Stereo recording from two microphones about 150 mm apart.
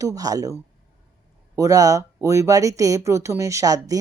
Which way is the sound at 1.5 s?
20° right (ahead or behind).